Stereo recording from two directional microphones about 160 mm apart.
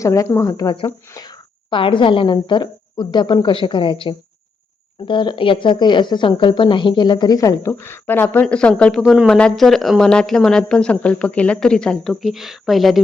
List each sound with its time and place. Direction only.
0.0 s speech: 20° left (ahead or behind)
1.7 s a woman's voice: 30° left (ahead or behind); by 13.0 s centre (ahead or behind)